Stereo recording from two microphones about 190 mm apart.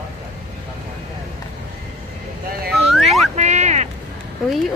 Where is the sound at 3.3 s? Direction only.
35° right (ahead or behind).